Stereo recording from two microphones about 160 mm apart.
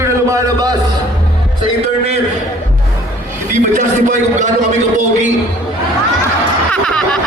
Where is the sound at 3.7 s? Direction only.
55° right (ahead or behind).